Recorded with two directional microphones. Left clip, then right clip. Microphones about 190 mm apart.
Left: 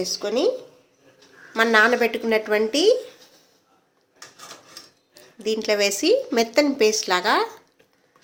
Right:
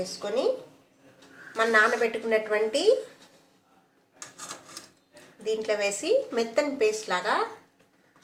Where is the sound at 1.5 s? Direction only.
65° left (ahead or behind).